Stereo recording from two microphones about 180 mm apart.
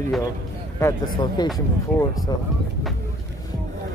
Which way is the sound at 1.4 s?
25° left (ahead or behind).